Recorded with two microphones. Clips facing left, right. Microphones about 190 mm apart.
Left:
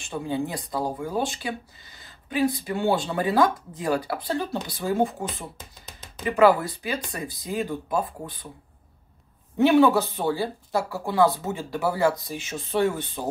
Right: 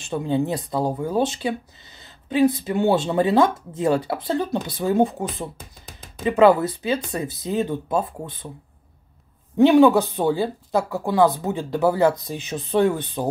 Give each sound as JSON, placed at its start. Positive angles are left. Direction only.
{"t": 0.0, "sound": "speech", "side_deg": -25}
{"t": 5.6, "sound": "music", "side_deg": -50}
{"t": 6.2, "sound": "speech", "side_deg": -20}
{"t": 9.6, "sound": "speech", "side_deg": -15}